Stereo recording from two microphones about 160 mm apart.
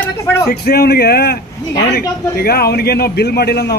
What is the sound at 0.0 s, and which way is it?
Speech, 15° left (ahead or behind).